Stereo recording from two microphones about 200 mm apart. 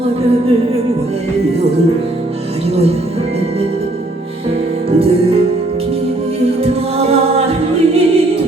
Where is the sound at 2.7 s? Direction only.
30° right (ahead or behind).